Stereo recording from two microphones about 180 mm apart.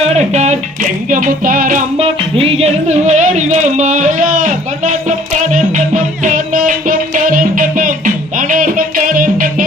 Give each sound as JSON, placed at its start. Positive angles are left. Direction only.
{"t": 0.1, "sound": "music", "side_deg": -40}
{"t": 2.0, "sound": "music", "side_deg": -30}